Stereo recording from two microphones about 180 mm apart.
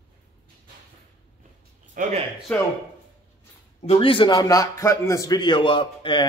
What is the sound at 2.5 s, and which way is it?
Speech, 10° left (ahead or behind).